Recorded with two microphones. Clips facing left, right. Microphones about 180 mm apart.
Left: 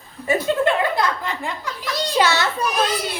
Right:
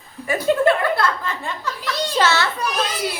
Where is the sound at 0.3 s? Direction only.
20° left (ahead or behind).